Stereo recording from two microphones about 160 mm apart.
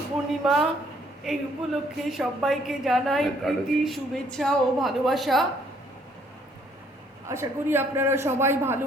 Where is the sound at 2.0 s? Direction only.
Centre (ahead or behind).